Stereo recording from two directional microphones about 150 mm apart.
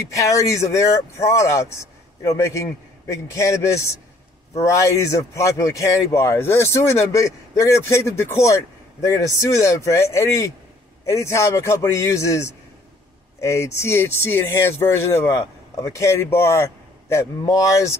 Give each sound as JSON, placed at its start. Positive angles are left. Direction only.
{"t": 0.1, "sound": "speech", "side_deg": 20}